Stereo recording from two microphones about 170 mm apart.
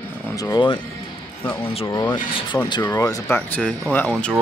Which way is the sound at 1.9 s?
20° left (ahead or behind).